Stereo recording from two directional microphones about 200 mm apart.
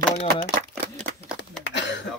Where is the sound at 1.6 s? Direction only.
60° left (ahead or behind).